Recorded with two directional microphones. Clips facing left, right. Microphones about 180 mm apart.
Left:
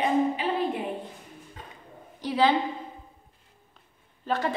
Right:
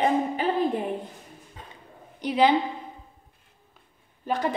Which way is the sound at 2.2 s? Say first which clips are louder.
Right 2 dB; 15° right (ahead or behind).